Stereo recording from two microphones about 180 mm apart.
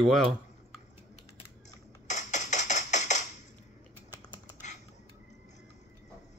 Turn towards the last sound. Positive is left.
turn(degrees=40)  # may be behind; listen again after turning